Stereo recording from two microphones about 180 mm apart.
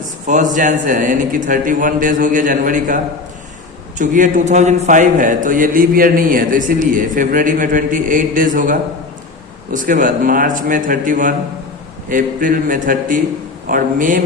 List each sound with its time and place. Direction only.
0.3 s a man's voice: 45° right (ahead or behind)